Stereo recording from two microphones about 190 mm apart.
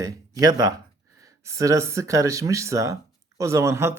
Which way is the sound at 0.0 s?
20° right (ahead or behind).